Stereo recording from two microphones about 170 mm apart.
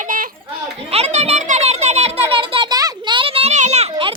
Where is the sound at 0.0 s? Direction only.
50° right (ahead or behind).